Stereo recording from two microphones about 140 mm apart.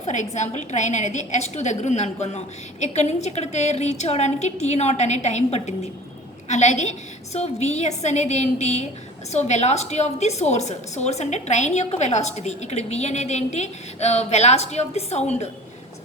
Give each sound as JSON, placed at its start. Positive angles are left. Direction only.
{"t": 0.0, "sound": "a woman's voice", "side_deg": 55}